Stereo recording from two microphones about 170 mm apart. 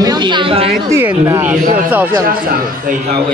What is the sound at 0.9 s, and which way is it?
Speech, 15° right (ahead or behind).